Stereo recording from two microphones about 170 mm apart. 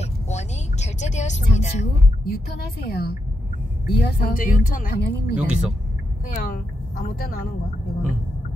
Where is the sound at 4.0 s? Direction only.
55° left (ahead or behind).